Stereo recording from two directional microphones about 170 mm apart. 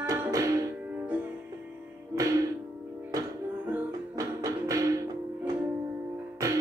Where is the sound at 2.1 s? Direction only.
20° right (ahead or behind).